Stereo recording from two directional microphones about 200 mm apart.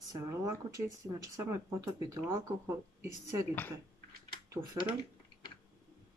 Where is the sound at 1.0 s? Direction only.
15° right (ahead or behind).